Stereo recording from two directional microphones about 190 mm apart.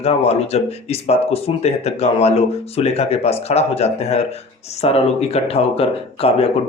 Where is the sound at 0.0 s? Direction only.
30° left (ahead or behind).